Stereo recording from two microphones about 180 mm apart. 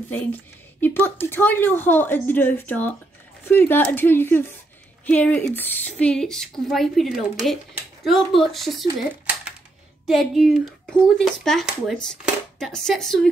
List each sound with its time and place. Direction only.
0.1 s a woman's voice: 10° left (ahead or behind)
9.1 s a sound: 10° right (ahead or behind)
10.0 s speech: centre (ahead or behind)